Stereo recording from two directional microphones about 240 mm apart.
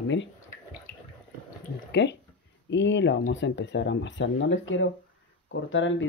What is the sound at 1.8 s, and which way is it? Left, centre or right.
Speech, left.